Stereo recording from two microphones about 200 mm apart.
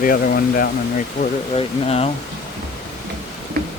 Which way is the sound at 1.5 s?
30° left (ahead or behind).